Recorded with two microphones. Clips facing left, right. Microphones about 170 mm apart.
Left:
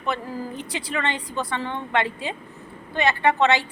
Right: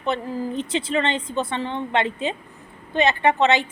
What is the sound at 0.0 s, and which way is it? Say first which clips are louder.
Speech: right 3 dB; 25° right (ahead or behind).